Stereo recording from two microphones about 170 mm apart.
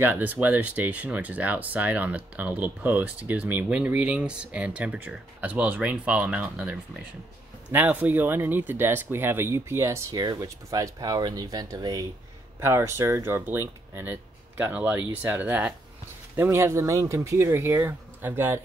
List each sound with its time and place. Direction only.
0.0 s speech: 10° right (ahead or behind)